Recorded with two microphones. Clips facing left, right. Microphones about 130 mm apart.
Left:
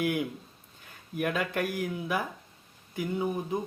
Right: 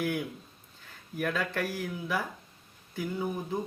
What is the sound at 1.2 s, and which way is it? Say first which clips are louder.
Speech: left 2 dB; 15° left (ahead or behind).